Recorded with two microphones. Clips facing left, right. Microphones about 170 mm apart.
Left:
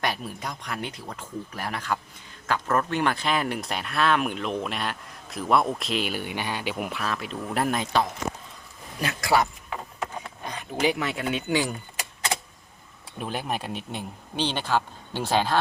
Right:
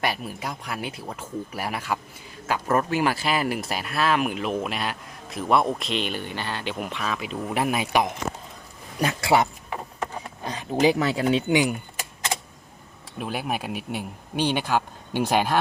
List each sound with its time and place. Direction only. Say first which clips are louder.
0.0 s speech: right 2 dB; 5° right (ahead or behind)
9.2 s speech: right 1 dB; 25° right (ahead or behind)
10.4 s speech: right 5 dB; 35° right (ahead or behind)
11.4 s speech: right 4 dB; 15° right (ahead or behind)
13.1 s speech: right 2 dB; 5° right (ahead or behind)